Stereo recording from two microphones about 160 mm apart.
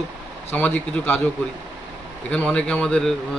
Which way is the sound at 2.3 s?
5° left (ahead or behind).